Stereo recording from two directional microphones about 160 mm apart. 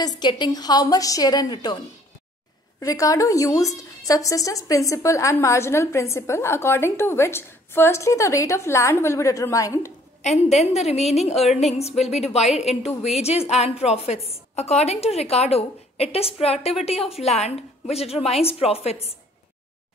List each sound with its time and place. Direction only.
0.0 s a woman's voice: 25° left (ahead or behind)
2.8 s a woman's voice: 20° left (ahead or behind)
10.6 s a woman's voice: 40° left (ahead or behind)